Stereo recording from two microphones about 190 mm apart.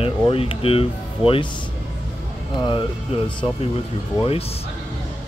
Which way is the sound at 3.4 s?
30° left (ahead or behind).